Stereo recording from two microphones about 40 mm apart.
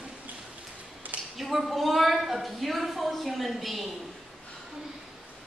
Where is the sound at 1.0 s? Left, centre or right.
Right.